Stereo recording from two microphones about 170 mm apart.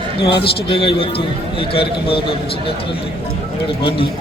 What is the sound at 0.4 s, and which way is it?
A man's voice, 30° left (ahead or behind).